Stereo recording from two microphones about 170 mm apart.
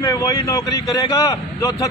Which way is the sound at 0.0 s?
20° left (ahead or behind).